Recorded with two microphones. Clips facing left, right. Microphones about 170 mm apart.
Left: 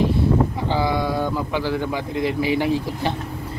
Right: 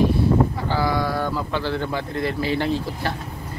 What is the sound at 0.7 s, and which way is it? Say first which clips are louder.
A man's voice: left 1 dB; 20° left (ahead or behind).